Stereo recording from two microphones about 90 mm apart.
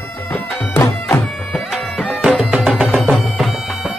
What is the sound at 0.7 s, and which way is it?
Music, 25° left (ahead or behind).